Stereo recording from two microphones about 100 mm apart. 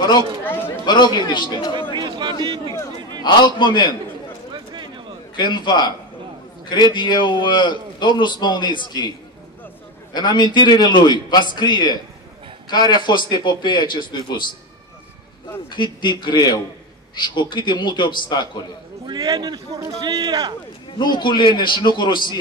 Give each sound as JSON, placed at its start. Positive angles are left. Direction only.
{"t": 0.4, "sound": "speech", "side_deg": 20}
{"t": 0.8, "sound": "a man's voice", "side_deg": 45}
{"t": 2.0, "sound": "a sound", "side_deg": -50}
{"t": 2.4, "sound": "speech", "side_deg": -50}
{"t": 3.3, "sound": "a man's voice", "side_deg": 50}
{"t": 5.4, "sound": "a man's voice", "side_deg": 45}
{"t": 10.1, "sound": "a man's voice", "side_deg": 45}
{"t": 15.7, "sound": "a man's voice", "side_deg": 50}
{"t": 19.0, "sound": "a man's voice", "side_deg": -45}
{"t": 21.0, "sound": "a man's voice", "side_deg": 50}